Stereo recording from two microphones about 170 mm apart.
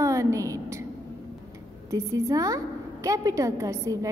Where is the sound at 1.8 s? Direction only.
20° right (ahead or behind).